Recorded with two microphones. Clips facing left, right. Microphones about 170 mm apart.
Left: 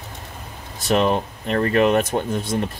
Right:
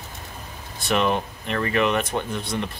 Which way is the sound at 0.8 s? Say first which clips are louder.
Left 3 dB; 35° left (ahead or behind).